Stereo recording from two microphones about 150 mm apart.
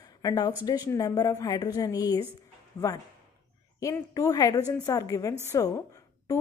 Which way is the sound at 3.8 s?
20° left (ahead or behind).